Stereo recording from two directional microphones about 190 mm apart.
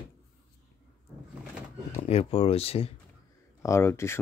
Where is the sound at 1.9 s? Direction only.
35° left (ahead or behind).